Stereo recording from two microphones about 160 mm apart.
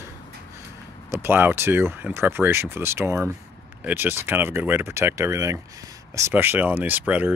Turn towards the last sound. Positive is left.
turn(degrees=-10)  # may be behind; listen again after turning